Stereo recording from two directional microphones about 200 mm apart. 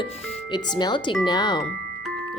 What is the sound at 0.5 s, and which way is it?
Speech, 20° left (ahead or behind).